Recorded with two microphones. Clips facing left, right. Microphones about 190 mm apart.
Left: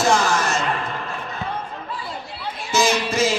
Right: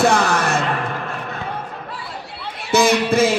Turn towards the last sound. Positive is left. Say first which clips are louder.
# right 4 dB
turn(degrees=-60)  # may be behind; listen again after turning